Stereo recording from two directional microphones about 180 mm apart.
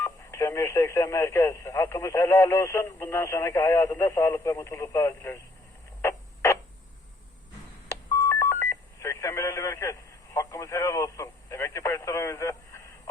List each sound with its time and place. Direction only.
0.0 s speech: 15° left (ahead or behind)
6.0 s radio: 15° left (ahead or behind)
7.9 s telephone dialing: 15° left (ahead or behind)